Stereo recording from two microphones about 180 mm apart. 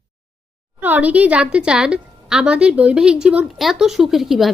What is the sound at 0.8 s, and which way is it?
A woman's voice, 10° right (ahead or behind).